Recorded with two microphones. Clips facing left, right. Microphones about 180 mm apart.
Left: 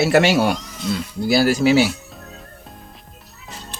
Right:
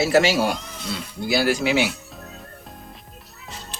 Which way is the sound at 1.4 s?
40° left (ahead or behind).